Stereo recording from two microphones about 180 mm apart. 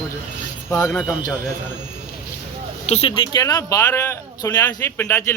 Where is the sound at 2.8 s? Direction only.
35° left (ahead or behind).